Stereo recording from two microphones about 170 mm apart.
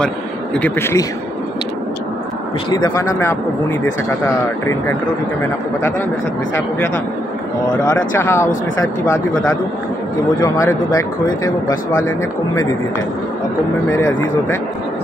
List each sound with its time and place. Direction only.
0.6 s speech: 10° left (ahead or behind)
2.7 s speech: 20° left (ahead or behind)
7.8 s speech: 20° left (ahead or behind)
13.9 s speech: 15° left (ahead or behind)